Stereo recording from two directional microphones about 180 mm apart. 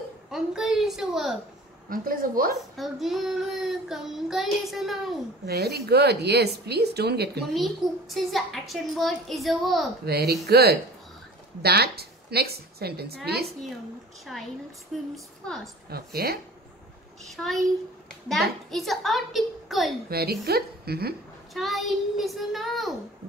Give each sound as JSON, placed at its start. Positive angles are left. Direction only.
{"t": 0.3, "sound": "a child's voice", "side_deg": -5}
{"t": 1.9, "sound": "a woman's voice", "side_deg": -50}
{"t": 2.8, "sound": "a child's voice", "side_deg": 0}
{"t": 5.5, "sound": "speech", "side_deg": -60}
{"t": 7.4, "sound": "a child's voice", "side_deg": 0}
{"t": 10.0, "sound": "a woman's voice", "side_deg": -65}
{"t": 14.3, "sound": "a child's voice", "side_deg": 0}
{"t": 15.9, "sound": "speech", "side_deg": -60}
{"t": 17.2, "sound": "a child's voice", "side_deg": 0}
{"t": 20.1, "sound": "speech", "side_deg": -60}
{"t": 21.5, "sound": "a child's voice", "side_deg": 0}